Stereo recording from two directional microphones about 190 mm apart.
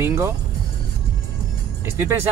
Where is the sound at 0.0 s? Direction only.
15° right (ahead or behind).